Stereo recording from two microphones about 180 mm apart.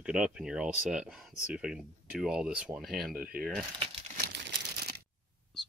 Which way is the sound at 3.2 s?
55° right (ahead or behind).